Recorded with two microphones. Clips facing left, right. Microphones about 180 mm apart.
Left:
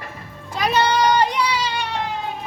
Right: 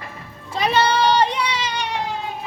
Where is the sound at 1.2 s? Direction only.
25° right (ahead or behind).